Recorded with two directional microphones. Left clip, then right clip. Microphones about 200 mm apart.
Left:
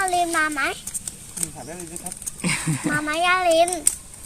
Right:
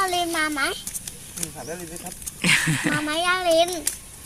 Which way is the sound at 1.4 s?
10° left (ahead or behind).